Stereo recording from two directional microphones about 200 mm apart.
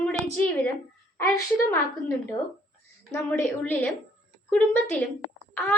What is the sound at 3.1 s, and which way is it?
A woman's voice, 10° left (ahead or behind).